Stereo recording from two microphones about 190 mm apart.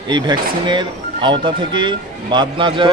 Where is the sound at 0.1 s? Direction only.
25° right (ahead or behind).